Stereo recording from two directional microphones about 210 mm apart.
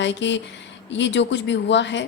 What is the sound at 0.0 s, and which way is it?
A woman's voice, 60° left (ahead or behind).